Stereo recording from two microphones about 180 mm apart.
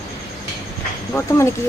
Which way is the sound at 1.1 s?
15° left (ahead or behind).